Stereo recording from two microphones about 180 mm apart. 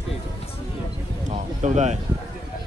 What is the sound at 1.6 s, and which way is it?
Speech, 40° right (ahead or behind).